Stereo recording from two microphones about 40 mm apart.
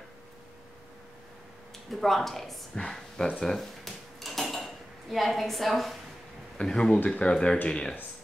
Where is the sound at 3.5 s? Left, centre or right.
Centre.